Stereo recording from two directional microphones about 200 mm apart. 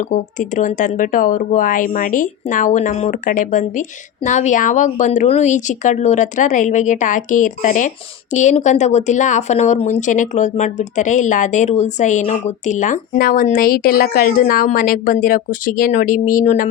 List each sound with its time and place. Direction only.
0.0 s speech: 40° left (ahead or behind)